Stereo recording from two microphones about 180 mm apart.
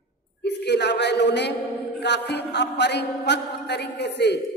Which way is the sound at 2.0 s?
70° left (ahead or behind).